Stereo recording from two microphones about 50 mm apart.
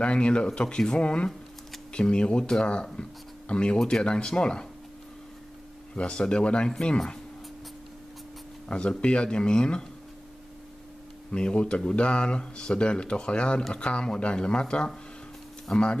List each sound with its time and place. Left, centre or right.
0.0 s speech: left
5.9 s speech: centre
8.6 s speech: left
11.3 s speech: centre